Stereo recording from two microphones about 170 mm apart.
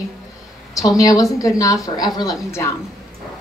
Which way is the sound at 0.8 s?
20° left (ahead or behind).